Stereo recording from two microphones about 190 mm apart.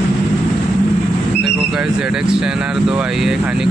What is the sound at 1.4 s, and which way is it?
Speech, 5° right (ahead or behind).